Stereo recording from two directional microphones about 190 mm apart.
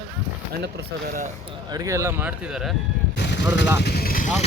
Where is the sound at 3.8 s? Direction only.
55° left (ahead or behind).